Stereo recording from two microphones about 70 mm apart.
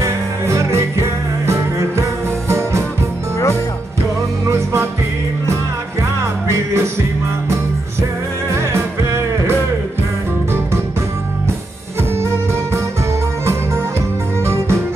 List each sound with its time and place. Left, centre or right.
0.0 s music: right
4.5 s music: right
6.4 s music: right
8.5 s music: right
12.2 s music: right
14.4 s music: right